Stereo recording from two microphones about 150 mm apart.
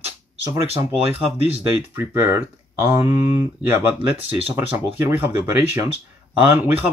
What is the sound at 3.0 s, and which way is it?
Speech, 45° left (ahead or behind).